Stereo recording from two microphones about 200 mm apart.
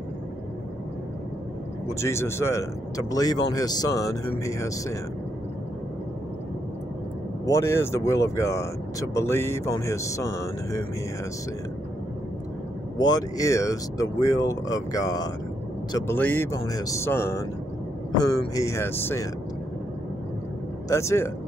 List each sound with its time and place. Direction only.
2.0 s speech: 15° left (ahead or behind)
7.4 s speech: 15° left (ahead or behind)
12.9 s speech: 20° left (ahead or behind)
18.5 s speech: 15° left (ahead or behind)
20.9 s speech: 15° left (ahead or behind)